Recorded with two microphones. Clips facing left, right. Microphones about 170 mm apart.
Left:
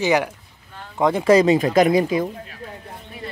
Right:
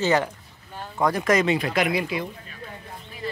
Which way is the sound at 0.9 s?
20° left (ahead or behind).